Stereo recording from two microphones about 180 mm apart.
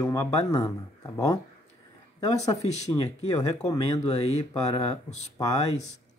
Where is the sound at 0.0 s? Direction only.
15° left (ahead or behind).